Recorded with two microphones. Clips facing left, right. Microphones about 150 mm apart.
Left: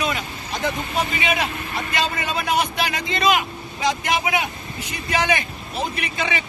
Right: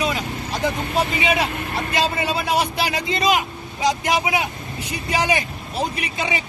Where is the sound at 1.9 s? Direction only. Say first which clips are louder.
Right 3 dB; 30° right (ahead or behind).